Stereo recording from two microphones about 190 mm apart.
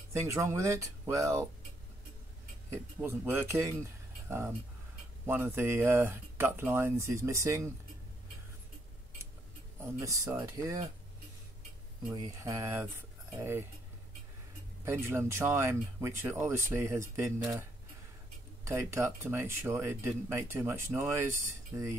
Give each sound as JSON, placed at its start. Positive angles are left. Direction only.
{"t": 0.1, "sound": "speech", "side_deg": -15}
{"t": 2.7, "sound": "speech", "side_deg": -10}
{"t": 9.9, "sound": "speech", "side_deg": -15}
{"t": 12.1, "sound": "speech", "side_deg": -15}
{"t": 14.9, "sound": "speech", "side_deg": -15}
{"t": 18.6, "sound": "speech", "side_deg": -15}